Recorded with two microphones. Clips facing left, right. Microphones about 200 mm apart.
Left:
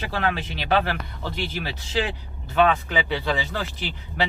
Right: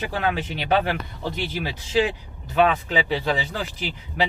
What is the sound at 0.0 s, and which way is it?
Speech, 15° right (ahead or behind).